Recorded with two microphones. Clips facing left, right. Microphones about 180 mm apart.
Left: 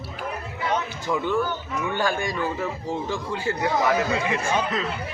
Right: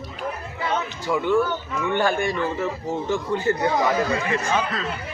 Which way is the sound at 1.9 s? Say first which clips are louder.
Right 4 dB; 15° left (ahead or behind).